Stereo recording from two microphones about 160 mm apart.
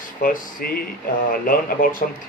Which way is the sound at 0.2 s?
60° left (ahead or behind).